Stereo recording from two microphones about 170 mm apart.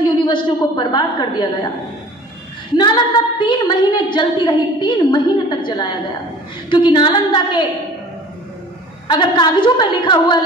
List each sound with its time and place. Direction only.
0.0 s a woman's voice: 25° left (ahead or behind)
3.3 s a woman's voice: 30° left (ahead or behind)
9.0 s a woman's voice: 25° left (ahead or behind)